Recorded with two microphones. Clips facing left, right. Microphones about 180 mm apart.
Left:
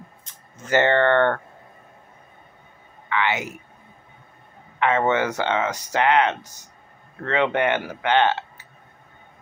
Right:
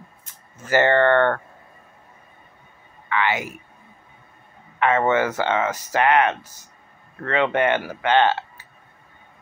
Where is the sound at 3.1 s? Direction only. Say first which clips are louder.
Right 1 dB; 20° left (ahead or behind).